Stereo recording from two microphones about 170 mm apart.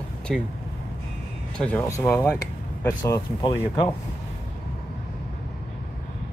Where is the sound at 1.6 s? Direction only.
10° left (ahead or behind).